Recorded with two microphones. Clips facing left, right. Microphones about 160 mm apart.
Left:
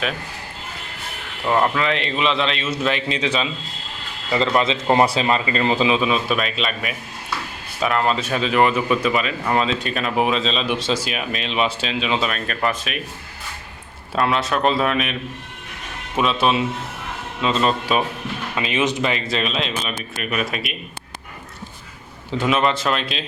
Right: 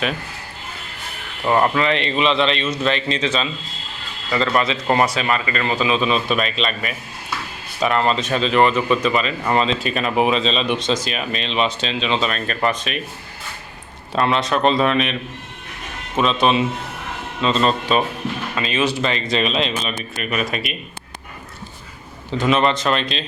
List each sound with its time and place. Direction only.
1.5 s a man's voice: 5° right (ahead or behind); by 6.0 s 25° left (ahead or behind)
6.0 s speech: 5° left (ahead or behind)
14.1 s speech: 5° left (ahead or behind)
16.1 s speech: 10° left (ahead or behind)
22.3 s speech: 5° left (ahead or behind)